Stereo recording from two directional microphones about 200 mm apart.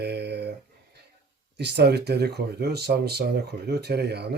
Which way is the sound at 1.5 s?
55° right (ahead or behind).